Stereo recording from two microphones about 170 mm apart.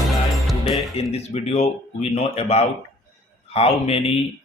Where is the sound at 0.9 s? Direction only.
40° left (ahead or behind).